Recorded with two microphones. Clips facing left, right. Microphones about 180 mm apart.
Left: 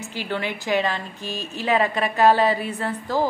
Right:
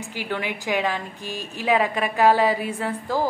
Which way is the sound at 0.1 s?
10° right (ahead or behind).